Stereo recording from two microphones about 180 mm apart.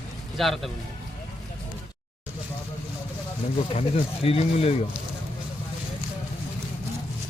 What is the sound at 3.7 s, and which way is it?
Speech, 35° left (ahead or behind).